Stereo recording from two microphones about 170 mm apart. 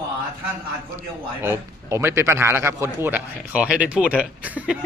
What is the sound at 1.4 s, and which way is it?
A man's voice, 15° right (ahead or behind).